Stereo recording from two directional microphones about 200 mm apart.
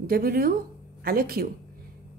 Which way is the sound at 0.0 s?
50° right (ahead or behind).